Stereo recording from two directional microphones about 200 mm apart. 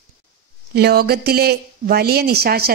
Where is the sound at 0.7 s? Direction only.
50° right (ahead or behind).